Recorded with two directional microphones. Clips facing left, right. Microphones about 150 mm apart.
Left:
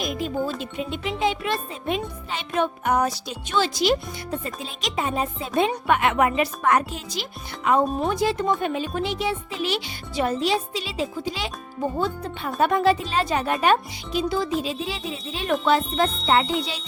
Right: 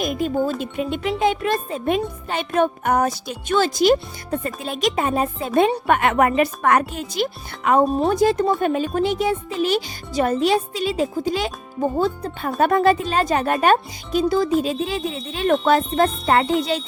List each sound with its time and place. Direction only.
0.6 s speech: 50° right (ahead or behind)
7.9 s speech: 40° right (ahead or behind)